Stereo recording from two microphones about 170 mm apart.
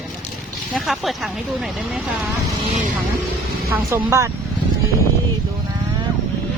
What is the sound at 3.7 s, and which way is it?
Speech, 15° right (ahead or behind).